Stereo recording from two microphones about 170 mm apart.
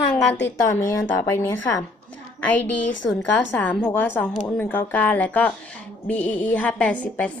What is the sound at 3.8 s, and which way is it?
A woman's voice, 10° left (ahead or behind).